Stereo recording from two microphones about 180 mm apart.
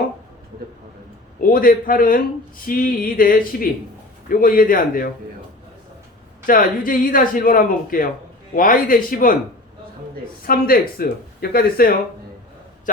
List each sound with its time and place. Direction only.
1.4 s speech: 50° left (ahead or behind)
6.4 s speech: 50° left (ahead or behind)
10.4 s speech: 55° left (ahead or behind)